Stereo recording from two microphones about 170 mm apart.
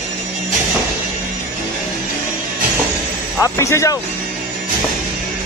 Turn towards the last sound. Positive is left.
turn(degrees=15)  # may be behind; listen again after turning